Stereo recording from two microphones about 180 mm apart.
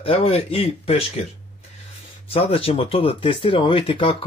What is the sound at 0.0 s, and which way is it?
Speech, 30° left (ahead or behind).